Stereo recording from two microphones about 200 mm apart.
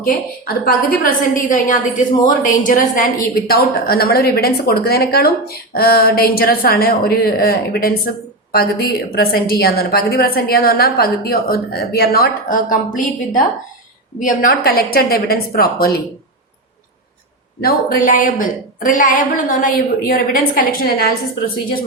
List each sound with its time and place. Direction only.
0.0 s a woman's voice: 45° left (ahead or behind)
17.6 s a woman's voice: 45° left (ahead or behind)